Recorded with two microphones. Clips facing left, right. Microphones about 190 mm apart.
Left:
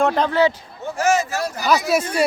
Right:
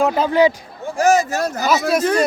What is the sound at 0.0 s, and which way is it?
Speech, 5° right (ahead or behind).